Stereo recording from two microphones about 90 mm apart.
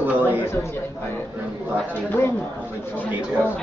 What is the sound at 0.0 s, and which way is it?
Chatter, 20° right (ahead or behind).